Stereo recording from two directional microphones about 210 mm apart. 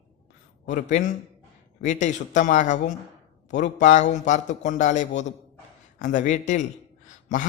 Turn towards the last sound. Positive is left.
turn(degrees=35)  # may be behind; listen again after turning